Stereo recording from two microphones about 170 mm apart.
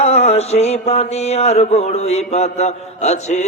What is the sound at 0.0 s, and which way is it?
Mantra, 40° left (ahead or behind).